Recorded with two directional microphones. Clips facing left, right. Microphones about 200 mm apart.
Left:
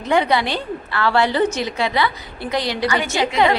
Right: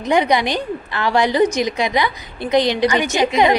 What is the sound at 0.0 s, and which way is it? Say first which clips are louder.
A woman's voice: right 2 dB; 15° right (ahead or behind).